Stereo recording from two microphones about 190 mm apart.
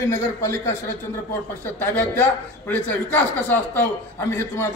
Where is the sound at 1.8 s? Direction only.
10° left (ahead or behind).